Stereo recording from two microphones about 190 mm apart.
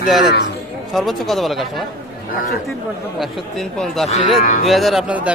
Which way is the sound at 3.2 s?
Centre (ahead or behind).